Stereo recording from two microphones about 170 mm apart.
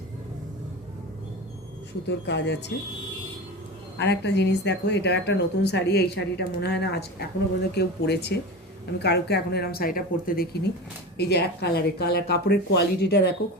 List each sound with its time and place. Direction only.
2.0 s speech: 90° left
3.9 s speech: 90° left; by 10.7 s 60° left (ahead or behind)
11.2 s speech: 75° left (ahead or behind)